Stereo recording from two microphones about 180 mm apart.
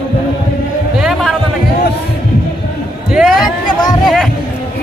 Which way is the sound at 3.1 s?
Centre (ahead or behind).